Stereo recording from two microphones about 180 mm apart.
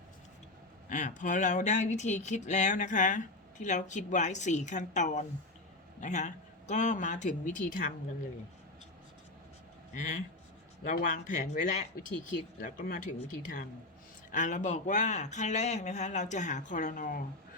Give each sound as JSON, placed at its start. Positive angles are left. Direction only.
{"t": 0.9, "sound": "speech", "side_deg": 45}
{"t": 9.9, "sound": "speech", "side_deg": 40}